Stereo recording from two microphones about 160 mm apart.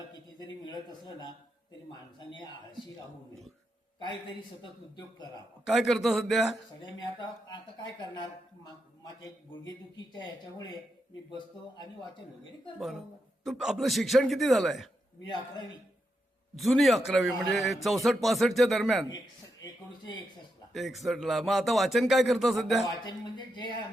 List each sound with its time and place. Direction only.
0.1 s a man's voice: 25° left (ahead or behind)
5.6 s a man's voice: centre (ahead or behind)
6.8 s a man's voice: 30° left (ahead or behind)
13.4 s a man's voice: centre (ahead or behind)
16.6 s a man's voice: centre (ahead or behind)
20.7 s a man's voice: centre (ahead or behind)